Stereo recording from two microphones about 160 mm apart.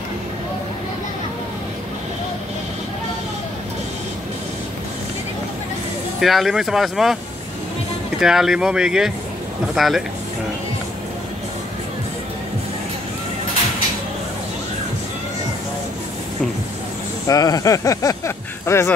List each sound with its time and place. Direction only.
6.2 s speech: centre (ahead or behind)
8.2 s speech: 5° right (ahead or behind)
17.3 s speech: 25° left (ahead or behind)